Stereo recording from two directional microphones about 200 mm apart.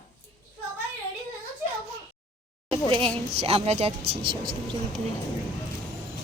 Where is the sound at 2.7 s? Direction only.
25° right (ahead or behind).